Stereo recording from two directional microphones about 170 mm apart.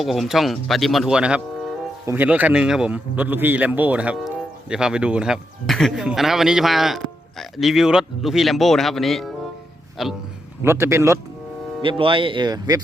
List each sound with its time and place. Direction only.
0.0 s a man's voice: centre (ahead or behind)
10.6 s a man's voice: 15° right (ahead or behind)
11.8 s speech: 30° right (ahead or behind)